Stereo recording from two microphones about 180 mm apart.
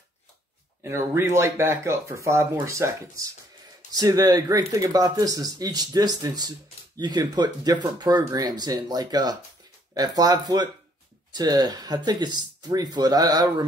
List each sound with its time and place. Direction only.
0.8 s speech: 15° right (ahead or behind)